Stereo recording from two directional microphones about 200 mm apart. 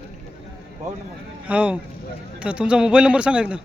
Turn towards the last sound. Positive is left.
turn(degrees=-5)  # may be behind; listen again after turning